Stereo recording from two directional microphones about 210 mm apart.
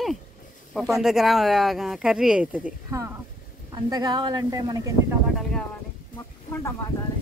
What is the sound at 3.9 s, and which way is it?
Speech, 20° right (ahead or behind).